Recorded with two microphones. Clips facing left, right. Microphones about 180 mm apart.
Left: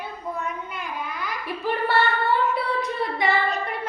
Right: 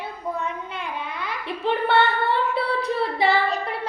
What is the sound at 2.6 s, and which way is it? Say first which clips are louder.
Singing: right 2 dB; 30° right (ahead or behind).